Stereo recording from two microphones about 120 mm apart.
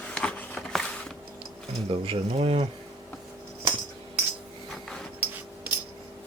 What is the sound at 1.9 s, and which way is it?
Speech, 50° right (ahead or behind).